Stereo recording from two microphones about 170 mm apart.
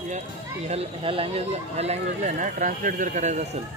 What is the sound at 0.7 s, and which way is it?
Speech, 35° right (ahead or behind).